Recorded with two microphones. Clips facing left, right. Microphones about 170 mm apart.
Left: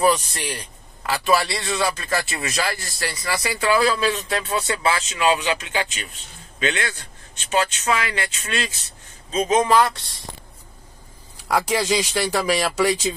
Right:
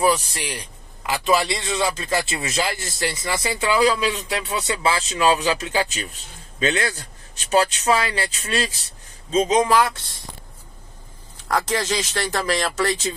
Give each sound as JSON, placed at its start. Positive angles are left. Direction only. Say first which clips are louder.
{"t": 0.0, "sound": "a man's voice", "louder": "left 1 dB", "side_deg": -10}
{"t": 4.9, "sound": "a man's voice", "louder": "right 1 dB", "side_deg": -35}
{"t": 9.3, "sound": "a man's voice", "louder": "even", "side_deg": -20}
{"t": 11.4, "sound": "speech", "louder": "left 2 dB", "side_deg": 10}